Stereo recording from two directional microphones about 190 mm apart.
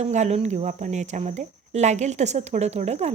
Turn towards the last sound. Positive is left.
turn(degrees=-35)  # may be behind; listen again after turning